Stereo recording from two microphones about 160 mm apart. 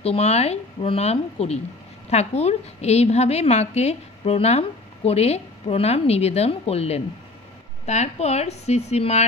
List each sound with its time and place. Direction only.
0.0 s a woman's voice: 40° left (ahead or behind)